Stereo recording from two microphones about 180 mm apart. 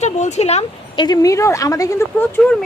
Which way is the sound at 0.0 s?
40° left (ahead or behind).